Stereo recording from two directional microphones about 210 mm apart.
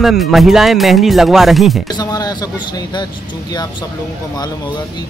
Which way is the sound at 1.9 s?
20° left (ahead or behind).